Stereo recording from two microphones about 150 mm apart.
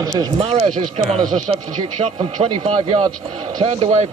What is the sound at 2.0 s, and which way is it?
Speech, 45° right (ahead or behind).